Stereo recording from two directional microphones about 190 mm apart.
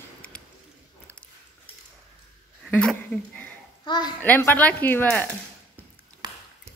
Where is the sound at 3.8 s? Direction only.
20° left (ahead or behind).